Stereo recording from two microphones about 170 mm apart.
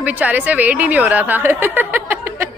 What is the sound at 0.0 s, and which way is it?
A woman's voice, 10° right (ahead or behind).